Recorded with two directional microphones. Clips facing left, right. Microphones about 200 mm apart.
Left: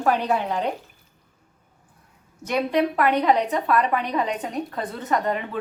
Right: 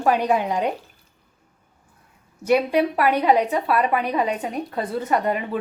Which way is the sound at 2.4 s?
10° right (ahead or behind).